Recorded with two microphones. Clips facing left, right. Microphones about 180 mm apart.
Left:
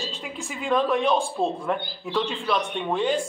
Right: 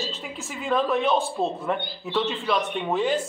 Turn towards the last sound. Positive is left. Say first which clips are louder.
# even
turn(degrees=-5)  # may be behind; listen again after turning